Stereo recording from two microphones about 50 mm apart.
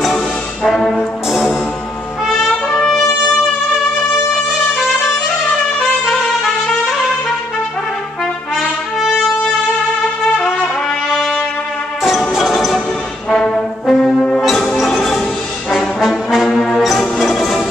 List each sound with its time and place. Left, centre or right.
0.7 s brass instrument: centre
8.5 s trumpet: centre
12.4 s music: centre
13.3 s brass instrument: centre
14.4 s music: centre
16.4 s brass instrument: centre
16.7 s music: centre